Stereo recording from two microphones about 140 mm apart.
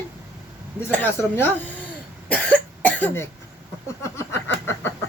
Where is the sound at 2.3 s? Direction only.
10° left (ahead or behind).